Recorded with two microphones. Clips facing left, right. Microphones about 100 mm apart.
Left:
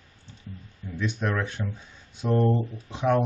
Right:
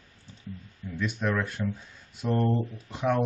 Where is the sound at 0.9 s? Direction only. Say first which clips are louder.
Even; 5° right (ahead or behind).